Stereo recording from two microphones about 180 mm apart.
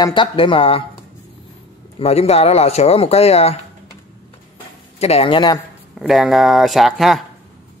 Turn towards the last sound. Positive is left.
turn(degrees=0)  # may be behind; listen again after turning